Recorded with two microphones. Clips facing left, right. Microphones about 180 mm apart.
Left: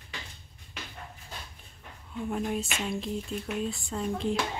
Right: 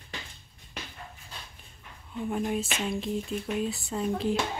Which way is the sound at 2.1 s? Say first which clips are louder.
Right 1 dB; centre (ahead or behind).